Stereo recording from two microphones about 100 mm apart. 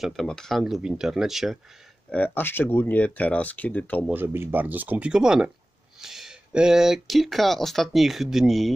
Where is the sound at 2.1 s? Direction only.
15° left (ahead or behind).